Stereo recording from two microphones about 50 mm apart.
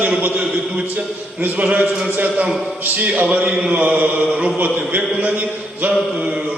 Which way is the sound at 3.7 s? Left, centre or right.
Right.